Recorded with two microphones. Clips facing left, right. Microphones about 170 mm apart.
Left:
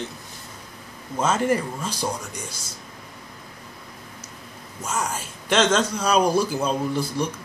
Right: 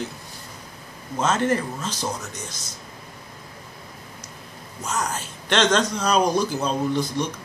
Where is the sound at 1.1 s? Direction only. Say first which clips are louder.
Even; 10° left (ahead or behind).